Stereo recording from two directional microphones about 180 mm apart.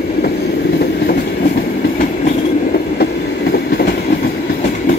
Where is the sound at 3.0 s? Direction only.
65° left (ahead or behind).